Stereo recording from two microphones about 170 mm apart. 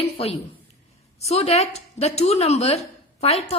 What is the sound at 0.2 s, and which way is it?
A woman's voice, 35° left (ahead or behind).